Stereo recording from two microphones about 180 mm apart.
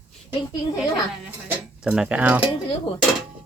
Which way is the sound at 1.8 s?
5° right (ahead or behind).